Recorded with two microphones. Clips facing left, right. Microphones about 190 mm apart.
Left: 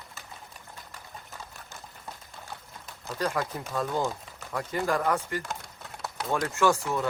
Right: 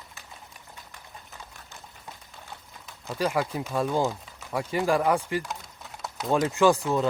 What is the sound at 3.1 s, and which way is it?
Speech, 10° right (ahead or behind).